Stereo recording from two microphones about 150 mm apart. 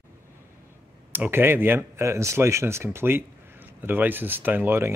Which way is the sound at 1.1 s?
15° right (ahead or behind).